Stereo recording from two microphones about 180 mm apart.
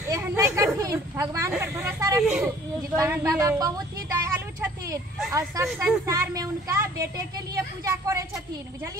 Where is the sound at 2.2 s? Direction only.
5° right (ahead or behind).